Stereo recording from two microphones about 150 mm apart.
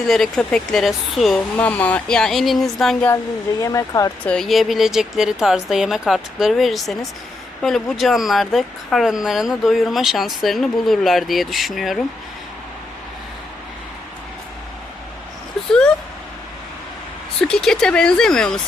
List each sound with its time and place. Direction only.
0.1 s speech: 5° left (ahead or behind)
3.6 s speech: 25° left (ahead or behind)
4.3 s speech: centre (ahead or behind)
17.4 s speech: 5° left (ahead or behind)